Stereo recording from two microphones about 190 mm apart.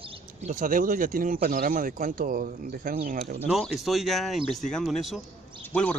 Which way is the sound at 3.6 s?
Centre (ahead or behind).